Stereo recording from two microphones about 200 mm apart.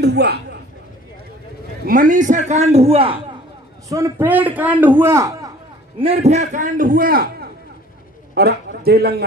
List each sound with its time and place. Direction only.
0.0 s a sound: 55° right (ahead or behind)
1.9 s a man's voice: 40° right (ahead or behind)
3.9 s a man's voice: 15° right (ahead or behind)
5.9 s a man's voice: 30° right (ahead or behind); by 9.1 s 50° right (ahead or behind)